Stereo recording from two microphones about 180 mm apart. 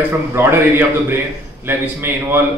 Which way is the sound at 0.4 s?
10° right (ahead or behind).